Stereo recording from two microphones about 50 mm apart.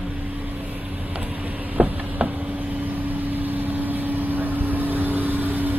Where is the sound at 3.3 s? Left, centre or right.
Right.